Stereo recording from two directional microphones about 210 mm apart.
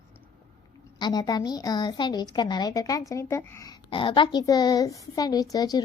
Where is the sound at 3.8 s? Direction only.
25° left (ahead or behind).